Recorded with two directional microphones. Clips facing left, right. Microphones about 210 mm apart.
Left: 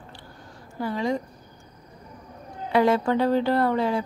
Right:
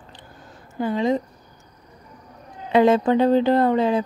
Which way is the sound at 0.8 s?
20° right (ahead or behind).